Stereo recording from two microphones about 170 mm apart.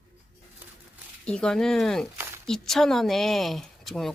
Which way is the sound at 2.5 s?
Centre (ahead or behind).